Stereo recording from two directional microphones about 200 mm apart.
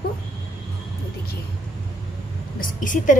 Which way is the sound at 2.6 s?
40° left (ahead or behind).